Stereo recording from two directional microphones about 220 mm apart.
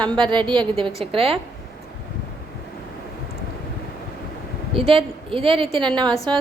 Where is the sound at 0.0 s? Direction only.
20° right (ahead or behind).